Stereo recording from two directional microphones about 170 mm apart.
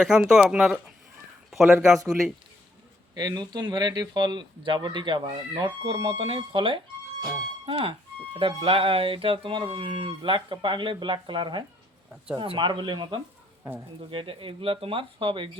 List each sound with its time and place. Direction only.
0.0 s a man's voice: 5° right (ahead or behind)
3.2 s speech: 25° right (ahead or behind)
7.2 s music: 30° right (ahead or behind)
8.3 s speech: 30° right (ahead or behind)